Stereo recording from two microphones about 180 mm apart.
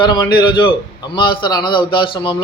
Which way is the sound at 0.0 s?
25° left (ahead or behind).